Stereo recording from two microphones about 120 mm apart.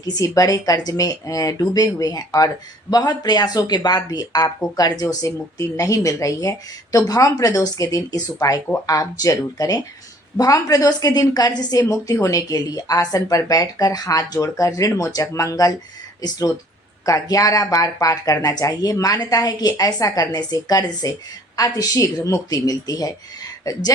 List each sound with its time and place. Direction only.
0.0 s speech: 30° left (ahead or behind)
17.1 s speech: 30° left (ahead or behind)